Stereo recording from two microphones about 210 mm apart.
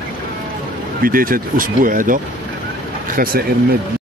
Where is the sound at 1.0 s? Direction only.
40° right (ahead or behind).